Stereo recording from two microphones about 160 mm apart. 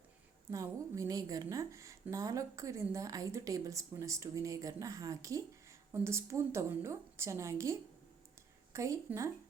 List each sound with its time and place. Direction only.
0.5 s a woman's voice: 20° right (ahead or behind)